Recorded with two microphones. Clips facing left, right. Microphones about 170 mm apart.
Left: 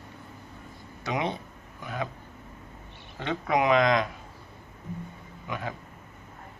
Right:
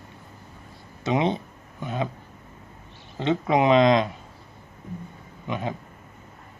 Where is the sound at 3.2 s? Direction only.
20° right (ahead or behind).